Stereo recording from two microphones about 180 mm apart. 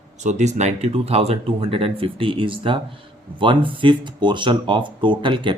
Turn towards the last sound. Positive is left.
turn(degrees=-25)  # may be behind; listen again after turning